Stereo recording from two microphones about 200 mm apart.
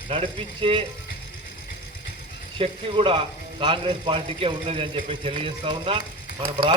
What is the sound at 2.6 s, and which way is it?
A man's voice, 25° right (ahead or behind).